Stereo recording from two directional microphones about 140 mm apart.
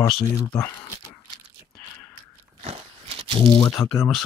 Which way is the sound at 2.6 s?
45° right (ahead or behind).